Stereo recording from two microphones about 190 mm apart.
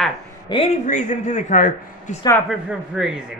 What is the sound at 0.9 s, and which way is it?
Speech, 40° left (ahead or behind).